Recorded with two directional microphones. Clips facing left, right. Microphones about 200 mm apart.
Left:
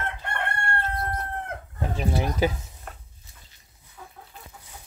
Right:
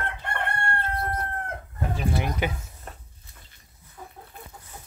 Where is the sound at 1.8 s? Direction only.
30° left (ahead or behind).